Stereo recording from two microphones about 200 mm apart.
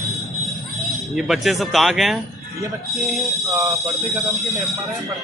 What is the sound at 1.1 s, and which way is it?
Speech, centre (ahead or behind).